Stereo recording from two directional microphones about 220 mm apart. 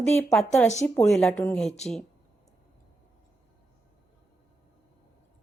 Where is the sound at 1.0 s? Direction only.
5° left (ahead or behind).